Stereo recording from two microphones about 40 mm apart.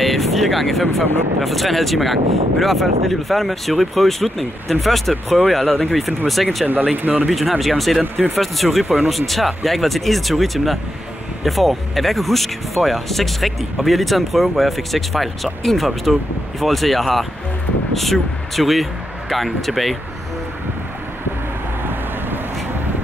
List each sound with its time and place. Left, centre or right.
0.0 s speech: centre
6.0 s speech: centre
7.0 s speech: right
7.2 s speech: centre